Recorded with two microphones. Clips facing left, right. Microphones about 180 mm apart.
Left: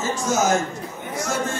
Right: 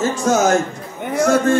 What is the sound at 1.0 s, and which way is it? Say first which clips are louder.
Speech: right 11 dB; 60° right (ahead or behind).